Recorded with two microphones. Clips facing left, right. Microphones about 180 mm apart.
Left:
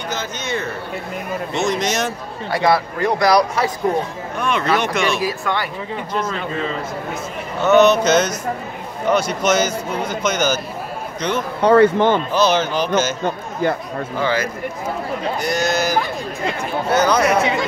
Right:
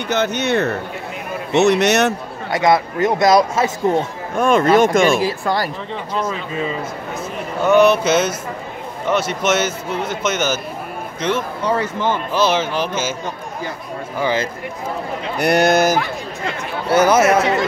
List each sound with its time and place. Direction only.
0.1 s speech: 65° right (ahead or behind)
2.5 s a man's voice: 20° right (ahead or behind)
4.4 s speech: 45° right (ahead or behind)
5.2 s speech: 35° right (ahead or behind)
7.6 s a man's voice: 10° right (ahead or behind)
11.6 s speech: 60° left (ahead or behind)
12.3 s a man's voice: 5° right (ahead or behind)
13.2 s speech: 55° left (ahead or behind)
14.2 s a man's voice: 20° right (ahead or behind)
15.3 s speech: 65° right (ahead or behind)
17.2 s a man's voice: centre (ahead or behind)